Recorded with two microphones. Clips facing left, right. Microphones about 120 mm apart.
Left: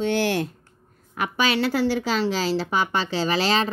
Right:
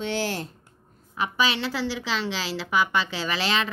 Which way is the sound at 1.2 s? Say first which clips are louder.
Left 3 dB; 45° left (ahead or behind).